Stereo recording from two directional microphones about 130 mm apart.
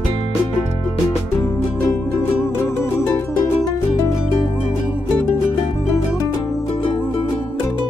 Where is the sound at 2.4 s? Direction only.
20° left (ahead or behind).